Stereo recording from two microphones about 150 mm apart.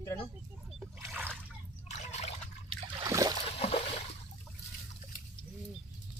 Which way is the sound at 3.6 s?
40° left (ahead or behind).